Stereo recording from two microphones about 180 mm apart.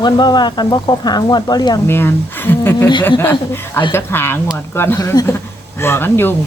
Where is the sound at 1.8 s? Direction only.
10° left (ahead or behind).